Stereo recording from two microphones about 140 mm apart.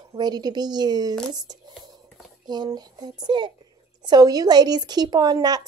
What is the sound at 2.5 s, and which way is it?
A woman's voice, 30° right (ahead or behind).